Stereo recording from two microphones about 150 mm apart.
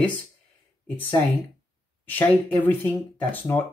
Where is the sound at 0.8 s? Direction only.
10° left (ahead or behind).